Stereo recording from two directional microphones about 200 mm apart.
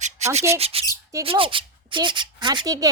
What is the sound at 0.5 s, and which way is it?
Squawk, 30° right (ahead or behind).